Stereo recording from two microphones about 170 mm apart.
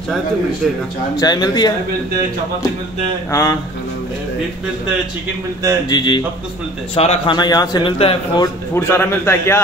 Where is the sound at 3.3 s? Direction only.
20° left (ahead or behind).